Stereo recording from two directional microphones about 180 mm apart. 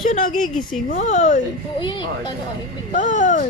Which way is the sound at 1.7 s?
25° left (ahead or behind).